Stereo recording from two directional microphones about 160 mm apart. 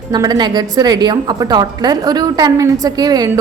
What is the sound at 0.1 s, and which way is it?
A woman's voice, 25° right (ahead or behind).